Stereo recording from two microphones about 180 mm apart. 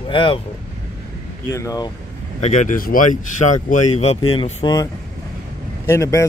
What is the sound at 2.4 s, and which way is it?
Speech, 45° left (ahead or behind).